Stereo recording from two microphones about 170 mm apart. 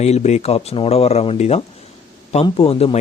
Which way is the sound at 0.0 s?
40° left (ahead or behind).